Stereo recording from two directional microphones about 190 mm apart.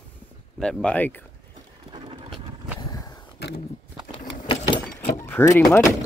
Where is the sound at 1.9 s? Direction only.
25° right (ahead or behind).